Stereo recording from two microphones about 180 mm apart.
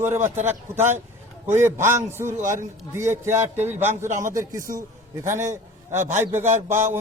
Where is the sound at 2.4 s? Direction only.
45° right (ahead or behind).